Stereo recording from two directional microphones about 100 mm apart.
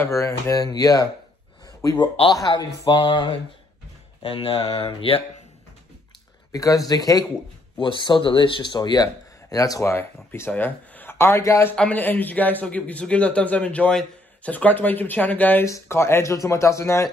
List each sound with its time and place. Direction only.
0.0 s speech: 30° left (ahead or behind); by 3.3 s 50° left (ahead or behind)
4.2 s speech: 65° left (ahead or behind)
6.5 s speech: 35° left (ahead or behind)
7.7 s speech: 50° left (ahead or behind); by 11.7 s 30° left (ahead or behind)
11.7 s a man's voice: 10° left (ahead or behind)
15.6 s speech: 30° left (ahead or behind)